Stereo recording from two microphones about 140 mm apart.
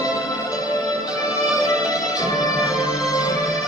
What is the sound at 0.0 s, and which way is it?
Music, 25° left (ahead or behind).